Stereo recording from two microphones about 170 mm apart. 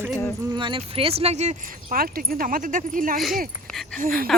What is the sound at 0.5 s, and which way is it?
Speech, 30° right (ahead or behind).